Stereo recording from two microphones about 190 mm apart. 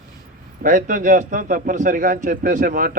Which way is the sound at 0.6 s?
45° right (ahead or behind).